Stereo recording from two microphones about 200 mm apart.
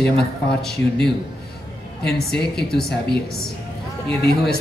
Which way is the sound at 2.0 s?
55° left (ahead or behind).